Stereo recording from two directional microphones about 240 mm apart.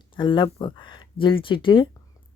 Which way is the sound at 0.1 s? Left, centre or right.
Centre.